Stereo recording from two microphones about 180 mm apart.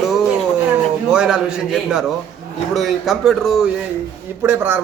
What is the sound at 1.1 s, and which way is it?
Speech, 5° right (ahead or behind).